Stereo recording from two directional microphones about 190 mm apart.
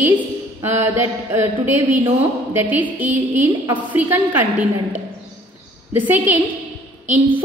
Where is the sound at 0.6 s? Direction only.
15° right (ahead or behind).